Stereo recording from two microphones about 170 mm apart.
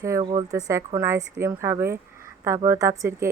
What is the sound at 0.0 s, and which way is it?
Speech, 15° right (ahead or behind).